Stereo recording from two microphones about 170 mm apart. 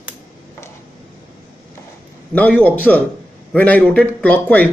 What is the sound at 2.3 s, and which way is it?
Speech, 10° left (ahead or behind).